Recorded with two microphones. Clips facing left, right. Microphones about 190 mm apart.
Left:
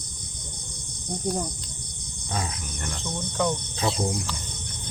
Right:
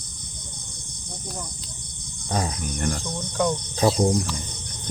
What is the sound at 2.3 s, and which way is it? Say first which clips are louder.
Speech: right 5 dB; 40° right (ahead or behind).